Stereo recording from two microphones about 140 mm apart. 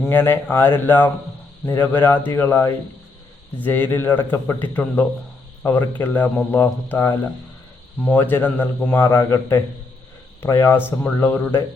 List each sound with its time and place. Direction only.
0.1 s speech: 15° left (ahead or behind)